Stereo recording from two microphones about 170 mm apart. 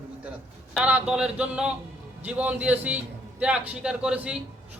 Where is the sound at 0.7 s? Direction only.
5° right (ahead or behind).